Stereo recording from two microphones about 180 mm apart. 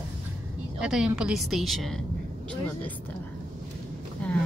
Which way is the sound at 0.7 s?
5° right (ahead or behind).